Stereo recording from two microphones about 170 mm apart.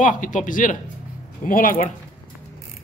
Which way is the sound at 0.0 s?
50° left (ahead or behind).